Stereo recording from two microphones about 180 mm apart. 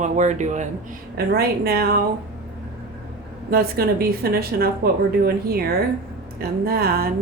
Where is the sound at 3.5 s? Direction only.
55° right (ahead or behind).